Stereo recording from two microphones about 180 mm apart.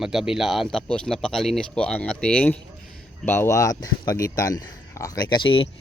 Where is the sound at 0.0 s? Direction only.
Centre (ahead or behind).